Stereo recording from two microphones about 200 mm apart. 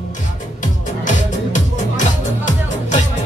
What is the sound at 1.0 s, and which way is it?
Music, 40° left (ahead or behind).